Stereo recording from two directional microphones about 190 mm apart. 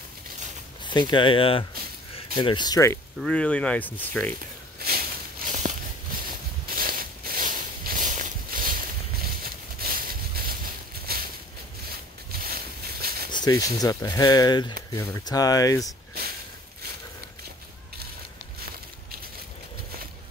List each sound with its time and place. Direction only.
0.8 s speech: 25° left (ahead or behind)
3.2 s speech: 5° left (ahead or behind)
4.7 s a sound: 55° right (ahead or behind)
13.3 s a sound: 20° left (ahead or behind)
13.7 s speech: 20° left (ahead or behind)
16.2 s snort: 55° right (ahead or behind)